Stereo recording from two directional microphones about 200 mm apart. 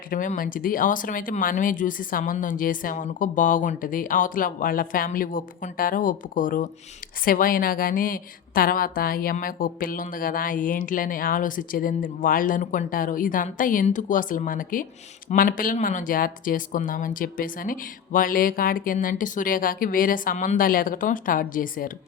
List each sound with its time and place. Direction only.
0.1 s a woman's voice: 45° left (ahead or behind)